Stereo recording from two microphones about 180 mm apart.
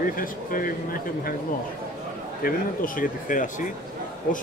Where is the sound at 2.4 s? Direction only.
50° left (ahead or behind).